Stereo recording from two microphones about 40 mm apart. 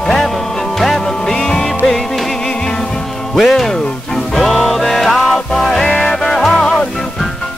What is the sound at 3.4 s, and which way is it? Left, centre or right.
Music, centre.